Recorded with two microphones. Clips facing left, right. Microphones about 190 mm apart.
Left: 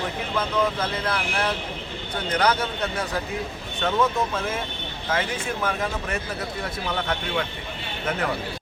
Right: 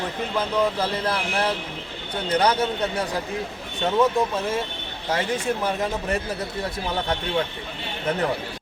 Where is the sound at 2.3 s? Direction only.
30° right (ahead or behind).